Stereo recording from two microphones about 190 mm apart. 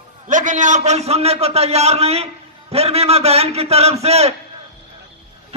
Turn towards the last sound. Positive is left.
turn(degrees=-35)  # may be behind; listen again after turning